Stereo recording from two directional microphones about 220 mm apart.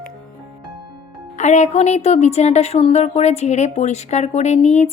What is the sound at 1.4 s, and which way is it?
A woman's voice, 30° left (ahead or behind).